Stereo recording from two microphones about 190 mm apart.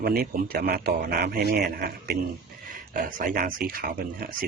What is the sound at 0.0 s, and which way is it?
A man's voice, 55° right (ahead or behind).